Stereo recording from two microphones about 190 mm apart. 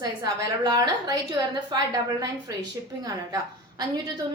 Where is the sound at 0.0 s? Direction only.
20° right (ahead or behind).